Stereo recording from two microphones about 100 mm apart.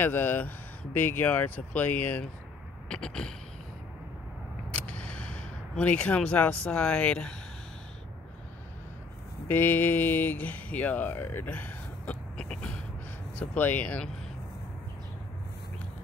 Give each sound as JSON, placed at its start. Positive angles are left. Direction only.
{"t": 0.0, "sound": "speech", "side_deg": 20}
{"t": 4.6, "sound": "speech", "side_deg": 15}
{"t": 9.5, "sound": "speech", "side_deg": 20}